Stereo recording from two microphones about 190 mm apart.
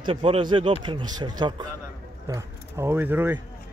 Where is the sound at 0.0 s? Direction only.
30° right (ahead or behind); by 3.3 s 10° right (ahead or behind).